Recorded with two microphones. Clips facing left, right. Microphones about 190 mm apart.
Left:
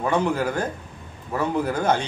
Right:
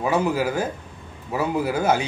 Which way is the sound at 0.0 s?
5° right (ahead or behind).